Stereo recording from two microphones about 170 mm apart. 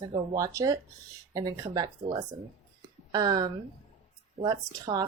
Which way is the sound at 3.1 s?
25° right (ahead or behind).